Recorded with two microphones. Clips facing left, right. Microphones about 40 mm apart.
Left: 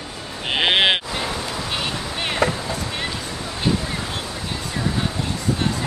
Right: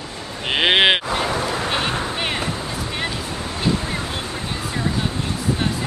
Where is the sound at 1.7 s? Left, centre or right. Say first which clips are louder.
Right 2 dB; right.